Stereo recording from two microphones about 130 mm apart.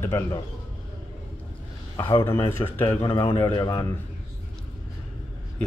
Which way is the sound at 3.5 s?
30° left (ahead or behind).